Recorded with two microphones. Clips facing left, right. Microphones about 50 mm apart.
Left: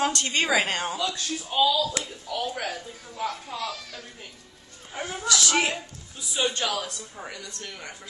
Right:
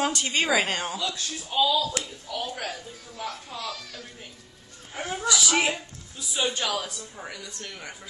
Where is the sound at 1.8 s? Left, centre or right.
Left.